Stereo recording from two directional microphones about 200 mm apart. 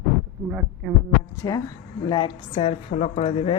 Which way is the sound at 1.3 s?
15° left (ahead or behind).